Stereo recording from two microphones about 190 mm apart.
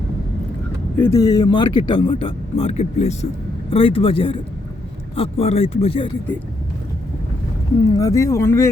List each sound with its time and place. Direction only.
0.9 s speech: 15° left (ahead or behind)
7.9 s speech: 20° left (ahead or behind)